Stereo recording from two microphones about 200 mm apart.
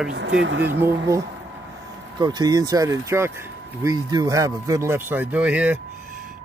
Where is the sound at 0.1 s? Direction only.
65° right (ahead or behind).